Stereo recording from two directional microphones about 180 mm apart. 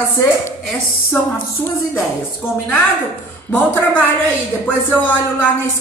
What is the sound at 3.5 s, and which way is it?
Speech, 10° left (ahead or behind).